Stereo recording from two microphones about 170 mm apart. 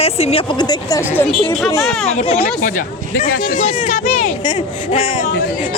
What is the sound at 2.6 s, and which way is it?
Speech, 55° left (ahead or behind).